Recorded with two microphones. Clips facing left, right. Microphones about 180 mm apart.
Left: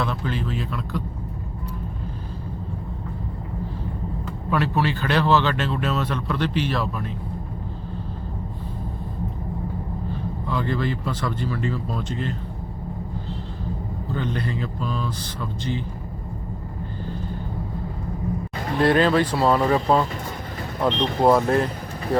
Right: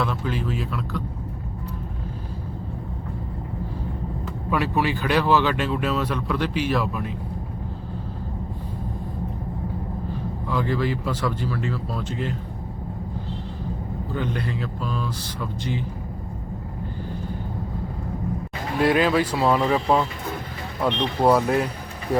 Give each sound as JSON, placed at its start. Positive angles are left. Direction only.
{"t": 0.0, "sound": "speech", "side_deg": -5}
{"t": 4.5, "sound": "speech", "side_deg": -10}
{"t": 10.5, "sound": "speech", "side_deg": -5}
{"t": 14.1, "sound": "speech", "side_deg": -5}
{"t": 18.8, "sound": "speech", "side_deg": -10}
{"t": 21.2, "sound": "speech", "side_deg": -5}